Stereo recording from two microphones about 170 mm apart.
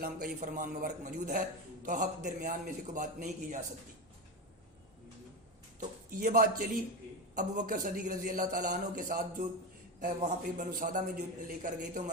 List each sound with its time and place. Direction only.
0.0 s a man's voice: 55° right (ahead or behind)
6.1 s a man's voice: 55° right (ahead or behind)